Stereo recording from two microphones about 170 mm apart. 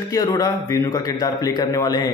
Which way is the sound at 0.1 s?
20° left (ahead or behind).